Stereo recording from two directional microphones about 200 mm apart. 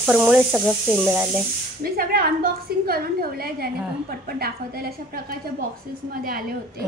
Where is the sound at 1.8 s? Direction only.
50° right (ahead or behind).